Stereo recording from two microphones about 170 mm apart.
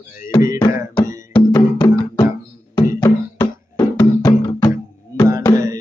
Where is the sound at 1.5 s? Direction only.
25° left (ahead or behind).